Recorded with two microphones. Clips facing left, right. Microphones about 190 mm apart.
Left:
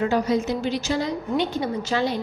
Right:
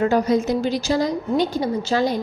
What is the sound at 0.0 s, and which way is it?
A woman's voice, 45° right (ahead or behind).